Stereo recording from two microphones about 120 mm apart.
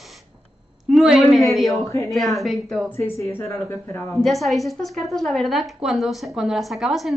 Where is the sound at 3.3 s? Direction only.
20° left (ahead or behind).